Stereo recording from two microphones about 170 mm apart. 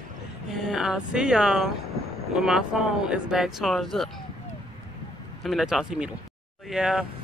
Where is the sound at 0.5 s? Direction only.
Centre (ahead or behind).